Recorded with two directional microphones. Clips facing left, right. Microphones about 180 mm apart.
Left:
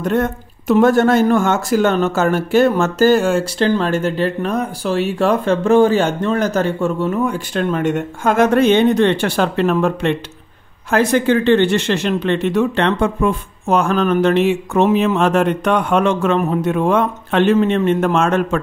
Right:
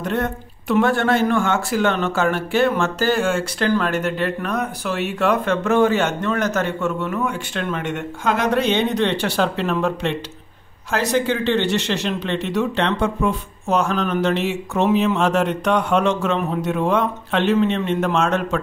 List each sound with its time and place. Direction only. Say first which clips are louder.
0.0 s speech: left 5 dB; 45° left (ahead or behind)